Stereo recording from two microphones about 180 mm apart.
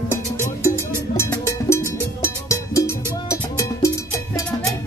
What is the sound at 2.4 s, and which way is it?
Cowbell, 15° left (ahead or behind).